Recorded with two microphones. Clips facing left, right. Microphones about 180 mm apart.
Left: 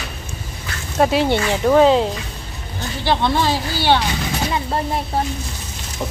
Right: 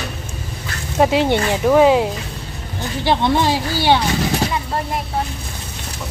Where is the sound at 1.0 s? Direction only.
15° right (ahead or behind).